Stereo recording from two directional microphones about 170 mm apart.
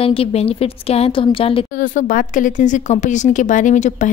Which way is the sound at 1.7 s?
55° left (ahead or behind).